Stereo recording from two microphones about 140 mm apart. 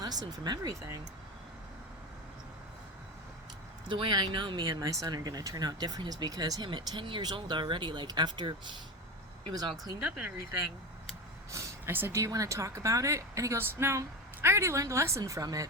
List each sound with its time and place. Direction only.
0.0 s speech: 30° right (ahead or behind)
3.8 s speech: 35° right (ahead or behind)
11.5 s speech: 20° right (ahead or behind)